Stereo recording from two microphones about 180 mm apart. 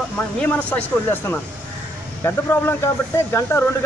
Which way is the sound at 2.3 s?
15° left (ahead or behind).